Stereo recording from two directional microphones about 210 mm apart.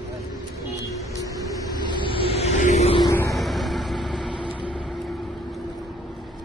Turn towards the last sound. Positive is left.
turn(degrees=0)  # may be behind; listen again after turning